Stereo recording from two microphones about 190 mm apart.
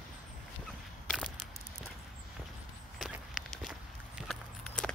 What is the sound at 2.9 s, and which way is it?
Walk, centre (ahead or behind).